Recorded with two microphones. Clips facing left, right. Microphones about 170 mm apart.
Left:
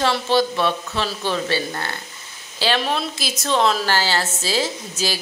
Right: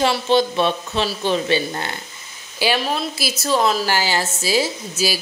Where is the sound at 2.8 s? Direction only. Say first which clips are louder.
Right 1 dB; centre (ahead or behind).